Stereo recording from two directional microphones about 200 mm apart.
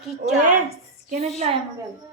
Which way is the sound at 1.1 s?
35° right (ahead or behind).